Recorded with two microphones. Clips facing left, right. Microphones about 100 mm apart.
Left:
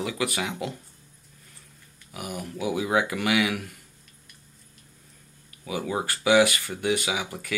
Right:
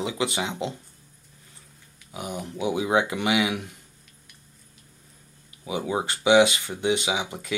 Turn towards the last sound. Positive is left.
turn(degrees=-20)  # may be behind; listen again after turning